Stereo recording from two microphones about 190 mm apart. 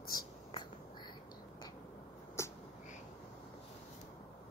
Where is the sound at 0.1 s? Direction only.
25° left (ahead or behind).